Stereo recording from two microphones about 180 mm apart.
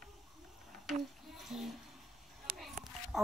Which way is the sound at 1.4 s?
Centre (ahead or behind).